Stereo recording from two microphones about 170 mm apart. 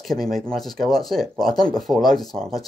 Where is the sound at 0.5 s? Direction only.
Centre (ahead or behind).